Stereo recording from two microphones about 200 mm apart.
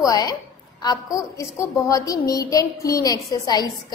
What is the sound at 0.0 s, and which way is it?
A woman's voice, 20° left (ahead or behind).